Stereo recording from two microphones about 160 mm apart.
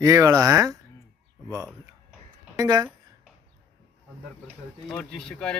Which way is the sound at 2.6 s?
25° right (ahead or behind).